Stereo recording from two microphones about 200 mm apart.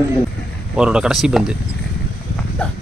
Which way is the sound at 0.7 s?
5° right (ahead or behind).